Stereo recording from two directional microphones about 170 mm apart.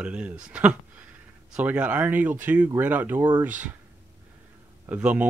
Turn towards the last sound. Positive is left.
turn(degrees=-10)  # may be behind; listen again after turning